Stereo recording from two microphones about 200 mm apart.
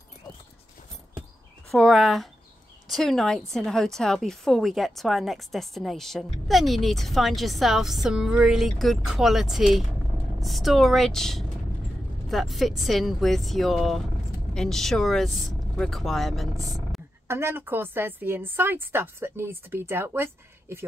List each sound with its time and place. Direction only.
1.7 s a woman's voice: centre (ahead or behind)
17.3 s a woman's voice: 10° right (ahead or behind)